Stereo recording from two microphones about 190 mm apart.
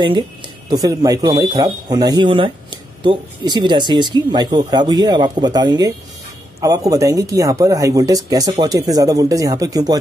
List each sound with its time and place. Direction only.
0.7 s speech: 20° right (ahead or behind)